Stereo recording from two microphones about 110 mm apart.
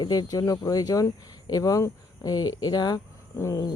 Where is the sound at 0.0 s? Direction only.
35° left (ahead or behind).